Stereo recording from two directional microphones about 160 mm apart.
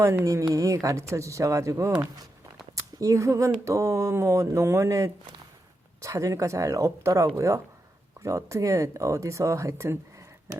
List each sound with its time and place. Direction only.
0.0 s speech: 20° right (ahead or behind)